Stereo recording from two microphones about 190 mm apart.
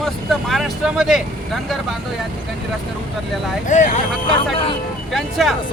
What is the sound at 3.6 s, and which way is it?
Speech, 40° left (ahead or behind).